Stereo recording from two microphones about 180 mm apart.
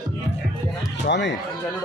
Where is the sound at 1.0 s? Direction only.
75° left (ahead or behind).